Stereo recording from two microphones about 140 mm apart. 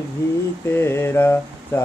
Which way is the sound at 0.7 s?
15° left (ahead or behind).